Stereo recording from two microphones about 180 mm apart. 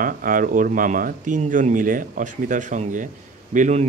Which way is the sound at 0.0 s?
50° right (ahead or behind).